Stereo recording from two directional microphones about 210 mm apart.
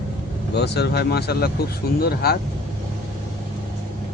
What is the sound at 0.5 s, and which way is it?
Speech, 50° left (ahead or behind).